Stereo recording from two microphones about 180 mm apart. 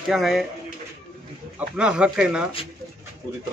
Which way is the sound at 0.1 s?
Centre (ahead or behind).